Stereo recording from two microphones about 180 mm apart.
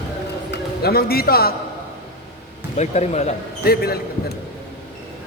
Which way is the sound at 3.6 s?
60° left (ahead or behind).